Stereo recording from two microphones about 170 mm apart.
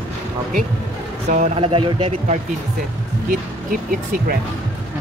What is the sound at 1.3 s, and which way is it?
Speech, 40° right (ahead or behind).